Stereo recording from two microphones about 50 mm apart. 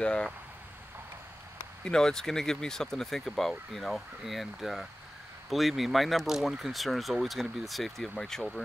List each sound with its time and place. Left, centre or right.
0.0 s speech: centre
1.9 s speech: centre